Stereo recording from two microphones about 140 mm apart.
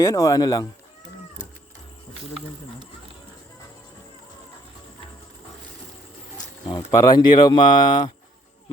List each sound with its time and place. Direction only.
0.0 s speech: 25° left (ahead or behind)
6.3 s speech: 30° left (ahead or behind)